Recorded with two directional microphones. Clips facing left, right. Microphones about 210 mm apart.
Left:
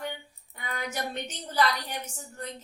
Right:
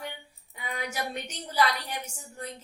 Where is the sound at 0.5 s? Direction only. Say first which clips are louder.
Even; 10° right (ahead or behind).